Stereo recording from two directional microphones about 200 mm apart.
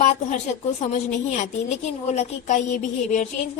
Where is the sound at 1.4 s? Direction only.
35° left (ahead or behind).